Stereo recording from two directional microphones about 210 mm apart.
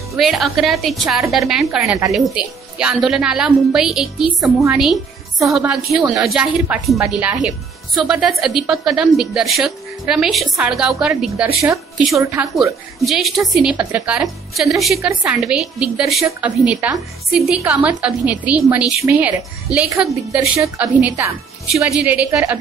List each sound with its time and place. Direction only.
0.2 s a woman's voice: centre (ahead or behind)
12.2 s a woman's voice: 15° right (ahead or behind)
13.0 s a woman's voice: centre (ahead or behind)